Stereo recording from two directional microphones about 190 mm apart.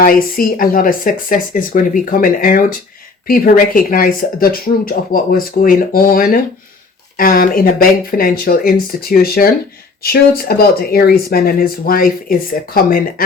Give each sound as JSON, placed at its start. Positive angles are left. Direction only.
{"t": 0.0, "sound": "speech", "side_deg": 50}